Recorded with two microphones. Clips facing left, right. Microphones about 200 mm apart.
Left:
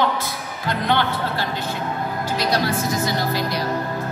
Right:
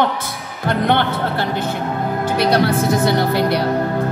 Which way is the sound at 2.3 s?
60° right (ahead or behind).